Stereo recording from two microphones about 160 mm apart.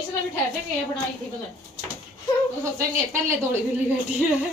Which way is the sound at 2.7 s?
15° right (ahead or behind).